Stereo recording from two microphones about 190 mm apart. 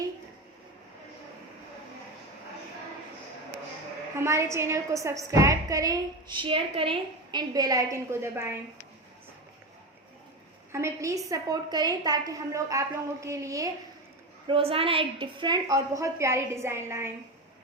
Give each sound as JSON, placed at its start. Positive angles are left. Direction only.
{"t": 4.2, "sound": "a woman's voice", "side_deg": -15}
{"t": 10.7, "sound": "a woman's voice", "side_deg": -15}
{"t": 14.4, "sound": "a woman's voice", "side_deg": -30}